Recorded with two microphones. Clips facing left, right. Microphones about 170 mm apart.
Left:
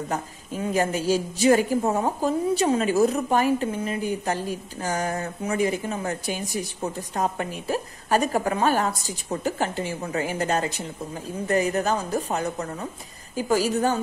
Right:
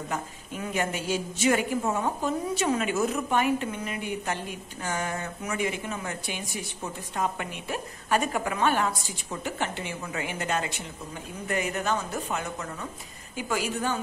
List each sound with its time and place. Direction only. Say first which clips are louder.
0.1 s a woman's voice: left 4 dB; 35° left (ahead or behind)